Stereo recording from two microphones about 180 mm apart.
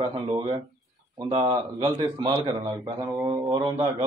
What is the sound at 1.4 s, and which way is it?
A man's voice, 30° right (ahead or behind).